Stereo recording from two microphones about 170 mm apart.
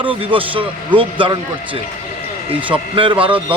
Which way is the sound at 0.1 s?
30° right (ahead or behind).